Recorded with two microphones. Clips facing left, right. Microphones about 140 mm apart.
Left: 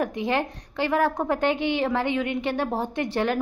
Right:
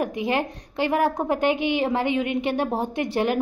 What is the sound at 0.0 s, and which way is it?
A woman's voice, 10° right (ahead or behind).